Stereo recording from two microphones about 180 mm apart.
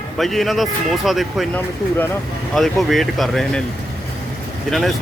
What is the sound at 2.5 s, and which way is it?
Speech, centre (ahead or behind).